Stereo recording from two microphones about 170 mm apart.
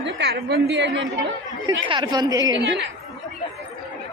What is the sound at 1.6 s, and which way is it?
Speech, 25° right (ahead or behind).